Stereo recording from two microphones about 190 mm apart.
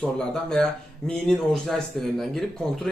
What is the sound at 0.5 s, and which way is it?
Speech, centre (ahead or behind).